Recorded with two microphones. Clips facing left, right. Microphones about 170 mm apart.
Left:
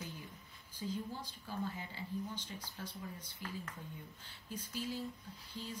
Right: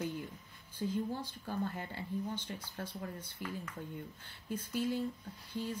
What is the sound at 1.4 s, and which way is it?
Speech, 55° right (ahead or behind).